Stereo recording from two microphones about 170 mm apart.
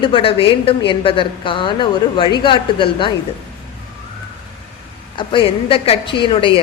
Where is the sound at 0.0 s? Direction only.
30° left (ahead or behind).